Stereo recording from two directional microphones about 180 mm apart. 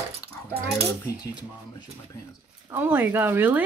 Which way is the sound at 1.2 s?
25° left (ahead or behind).